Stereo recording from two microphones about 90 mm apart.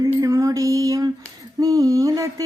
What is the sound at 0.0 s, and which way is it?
Music, 35° right (ahead or behind).